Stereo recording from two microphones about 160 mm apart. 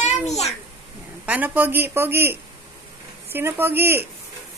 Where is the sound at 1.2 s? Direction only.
10° right (ahead or behind).